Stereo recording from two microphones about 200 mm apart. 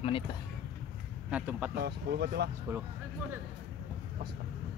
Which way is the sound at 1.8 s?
55° right (ahead or behind).